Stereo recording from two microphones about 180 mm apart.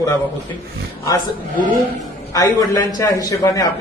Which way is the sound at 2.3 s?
20° left (ahead or behind).